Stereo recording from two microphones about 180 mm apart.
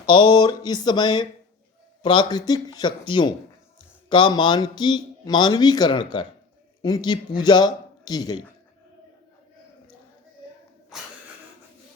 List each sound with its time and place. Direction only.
0.1 s a man's voice: 25° left (ahead or behind)